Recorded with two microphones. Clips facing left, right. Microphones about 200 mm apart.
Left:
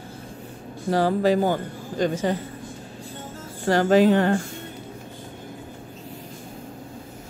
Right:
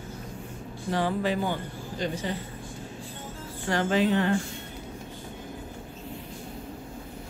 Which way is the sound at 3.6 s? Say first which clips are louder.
Left 7 dB; 40° left (ahead or behind).